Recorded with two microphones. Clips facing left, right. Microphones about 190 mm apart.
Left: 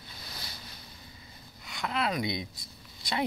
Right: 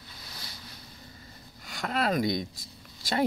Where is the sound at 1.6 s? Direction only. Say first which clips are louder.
Right 3 dB; 45° right (ahead or behind).